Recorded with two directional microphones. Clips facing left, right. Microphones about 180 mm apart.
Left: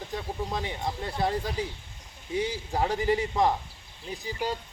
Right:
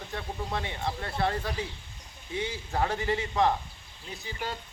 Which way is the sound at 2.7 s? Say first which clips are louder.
Left 2 dB; 15° left (ahead or behind).